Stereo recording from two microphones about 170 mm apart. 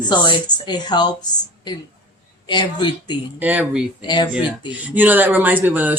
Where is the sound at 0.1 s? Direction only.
25° left (ahead or behind).